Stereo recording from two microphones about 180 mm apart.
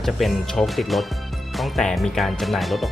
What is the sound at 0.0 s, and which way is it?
Speech, centre (ahead or behind).